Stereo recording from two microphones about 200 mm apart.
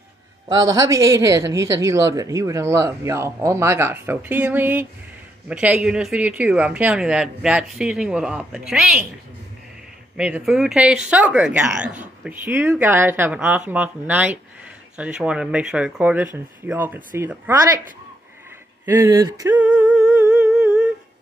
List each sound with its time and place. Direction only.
0.5 s a woman's voice: 15° right (ahead or behind); by 9.0 s centre (ahead or behind)
10.1 s a woman's voice: 5° right (ahead or behind)
18.9 s a woman's voice: 15° right (ahead or behind)
19.5 s humming: 5° right (ahead or behind)